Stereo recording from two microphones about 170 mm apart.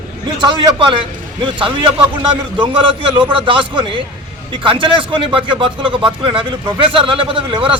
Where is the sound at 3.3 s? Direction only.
30° right (ahead or behind).